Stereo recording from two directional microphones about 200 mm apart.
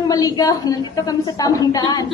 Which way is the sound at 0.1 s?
20° left (ahead or behind).